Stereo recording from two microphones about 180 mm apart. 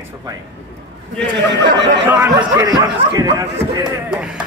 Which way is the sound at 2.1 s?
15° right (ahead or behind).